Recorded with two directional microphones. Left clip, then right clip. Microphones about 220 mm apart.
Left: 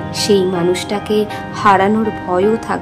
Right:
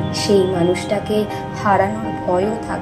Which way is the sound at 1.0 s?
35° left (ahead or behind).